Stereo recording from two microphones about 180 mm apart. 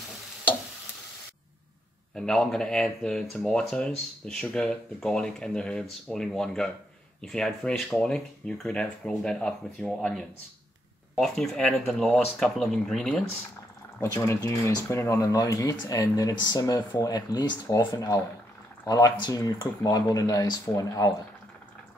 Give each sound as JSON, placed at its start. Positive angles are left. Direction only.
{"t": 2.1, "sound": "speech", "side_deg": 5}
{"t": 13.9, "sound": "speech", "side_deg": 15}